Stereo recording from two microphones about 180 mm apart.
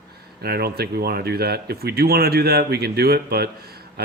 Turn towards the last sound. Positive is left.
turn(degrees=-60)  # may be behind; listen again after turning